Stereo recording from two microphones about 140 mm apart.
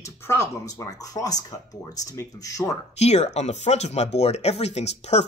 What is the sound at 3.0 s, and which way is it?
Speech, 50° left (ahead or behind).